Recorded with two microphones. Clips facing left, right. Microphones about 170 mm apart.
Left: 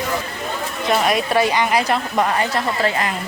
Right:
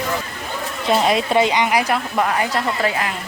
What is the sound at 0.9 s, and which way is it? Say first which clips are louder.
A woman's voice: right 1 dB; 20° right (ahead or behind).